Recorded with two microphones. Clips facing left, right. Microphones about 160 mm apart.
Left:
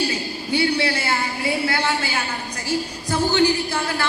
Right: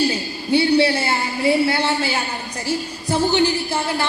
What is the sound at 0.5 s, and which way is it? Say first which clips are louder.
A woman's voice: right 5 dB; 30° right (ahead or behind).